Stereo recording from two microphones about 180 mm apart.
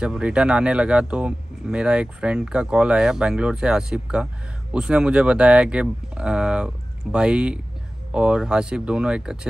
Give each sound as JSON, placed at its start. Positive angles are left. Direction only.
{"t": 0.0, "sound": "speech", "side_deg": -5}